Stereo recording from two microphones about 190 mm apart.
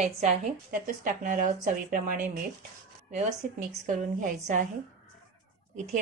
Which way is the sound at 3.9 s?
40° right (ahead or behind).